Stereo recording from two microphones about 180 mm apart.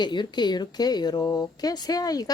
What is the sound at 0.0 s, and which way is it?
Speech, 25° left (ahead or behind).